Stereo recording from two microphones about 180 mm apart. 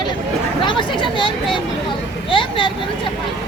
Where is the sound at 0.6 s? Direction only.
25° left (ahead or behind).